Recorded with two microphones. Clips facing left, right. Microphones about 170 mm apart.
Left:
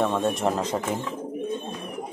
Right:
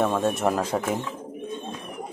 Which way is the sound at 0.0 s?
5° right (ahead or behind).